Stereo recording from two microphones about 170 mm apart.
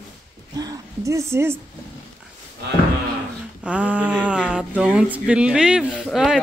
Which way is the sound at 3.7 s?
5° right (ahead or behind).